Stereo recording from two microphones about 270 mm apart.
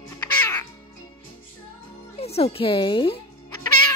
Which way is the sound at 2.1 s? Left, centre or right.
Left.